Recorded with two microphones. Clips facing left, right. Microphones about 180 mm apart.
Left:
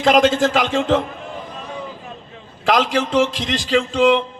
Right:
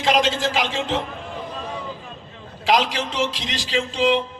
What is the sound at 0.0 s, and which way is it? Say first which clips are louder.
Speech: left 6 dB; 50° left (ahead or behind).